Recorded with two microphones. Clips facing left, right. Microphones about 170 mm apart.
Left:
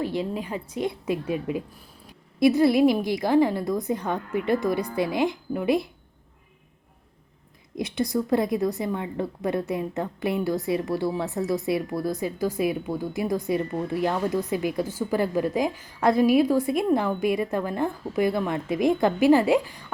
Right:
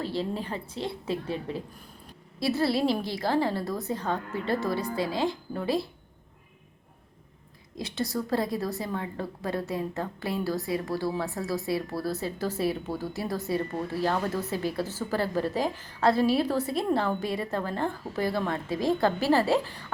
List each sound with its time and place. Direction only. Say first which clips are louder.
0.0 s a woman's voice: left 3 dB; 15° left (ahead or behind)
7.8 s a woman's voice: left 5 dB; 15° left (ahead or behind)